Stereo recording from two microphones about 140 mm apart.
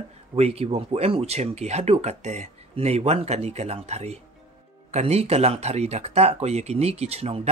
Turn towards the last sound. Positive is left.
turn(degrees=-45)  # may be behind; listen again after turning